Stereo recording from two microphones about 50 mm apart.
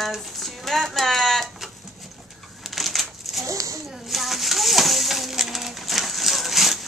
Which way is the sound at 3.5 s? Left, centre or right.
Right.